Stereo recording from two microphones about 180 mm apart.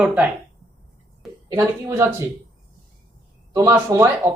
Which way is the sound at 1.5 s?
20° right (ahead or behind).